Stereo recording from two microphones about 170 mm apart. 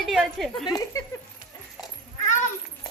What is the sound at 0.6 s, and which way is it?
Speech, 25° left (ahead or behind).